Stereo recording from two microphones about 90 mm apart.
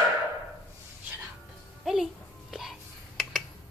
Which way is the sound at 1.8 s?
5° right (ahead or behind).